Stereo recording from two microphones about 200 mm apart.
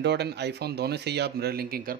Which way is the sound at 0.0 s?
60° right (ahead or behind).